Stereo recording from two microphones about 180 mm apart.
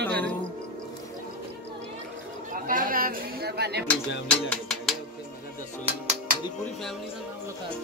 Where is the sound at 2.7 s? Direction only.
50° right (ahead or behind).